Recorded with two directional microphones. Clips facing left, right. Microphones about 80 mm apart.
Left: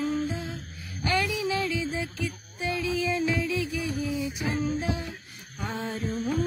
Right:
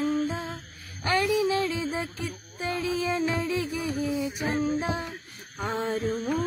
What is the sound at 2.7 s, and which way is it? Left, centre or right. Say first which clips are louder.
Music: even; right.